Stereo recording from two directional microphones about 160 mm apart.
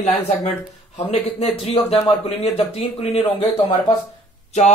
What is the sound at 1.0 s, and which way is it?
A man's voice, 40° left (ahead or behind).